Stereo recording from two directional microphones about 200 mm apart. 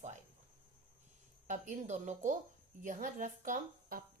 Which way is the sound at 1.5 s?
35° right (ahead or behind).